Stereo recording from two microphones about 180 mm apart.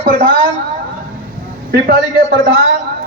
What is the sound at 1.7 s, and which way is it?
Speech, 60° right (ahead or behind).